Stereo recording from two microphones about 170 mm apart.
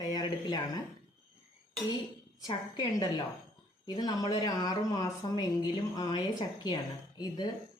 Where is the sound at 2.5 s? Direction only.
25° left (ahead or behind).